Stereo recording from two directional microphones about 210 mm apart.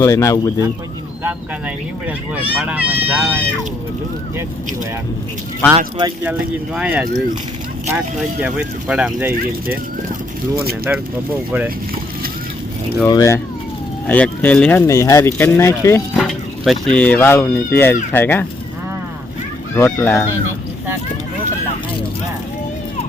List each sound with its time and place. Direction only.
0.0 s speech: 15° left (ahead or behind)
1.2 s speech: 5° right (ahead or behind)
5.7 s speech: 20° right (ahead or behind)
6.7 s speech: 5° right (ahead or behind)
13.1 s speech: 15° left (ahead or behind)
16.1 s speech: centre (ahead or behind)
19.7 s speech: 10° left (ahead or behind)